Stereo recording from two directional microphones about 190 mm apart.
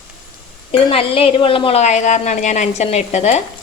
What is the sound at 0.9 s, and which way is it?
A woman's voice, 30° left (ahead or behind).